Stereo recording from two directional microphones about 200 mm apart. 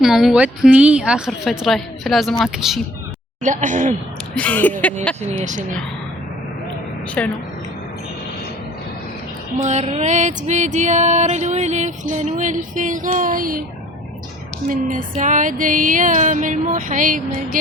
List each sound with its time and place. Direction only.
0.0 s a woman's voice: centre (ahead or behind)
3.4 s music: 40° right (ahead or behind)
4.4 s speech: 5° left (ahead or behind)
5.4 s music: 40° right (ahead or behind)
7.2 s speech: 5° left (ahead or behind)
9.6 s music: 35° right (ahead or behind)
14.7 s music: 45° right (ahead or behind)